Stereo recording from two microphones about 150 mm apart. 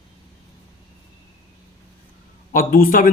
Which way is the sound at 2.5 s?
65° left (ahead or behind).